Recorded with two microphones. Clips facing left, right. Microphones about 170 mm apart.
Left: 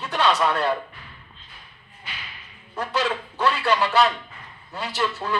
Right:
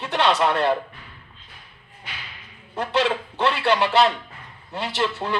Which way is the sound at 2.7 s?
20° right (ahead or behind).